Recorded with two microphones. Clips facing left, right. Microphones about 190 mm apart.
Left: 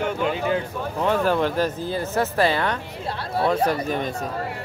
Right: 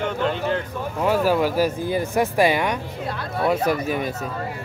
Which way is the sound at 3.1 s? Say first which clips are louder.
Left 2 dB; 30° left (ahead or behind).